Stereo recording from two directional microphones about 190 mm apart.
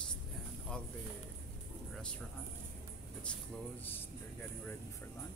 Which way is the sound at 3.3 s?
5° left (ahead or behind).